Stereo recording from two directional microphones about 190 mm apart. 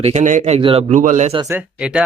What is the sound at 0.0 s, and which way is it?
A man's voice, 40° right (ahead or behind).